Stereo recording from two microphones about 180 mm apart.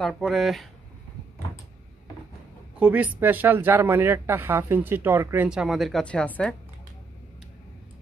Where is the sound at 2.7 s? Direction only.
10° right (ahead or behind).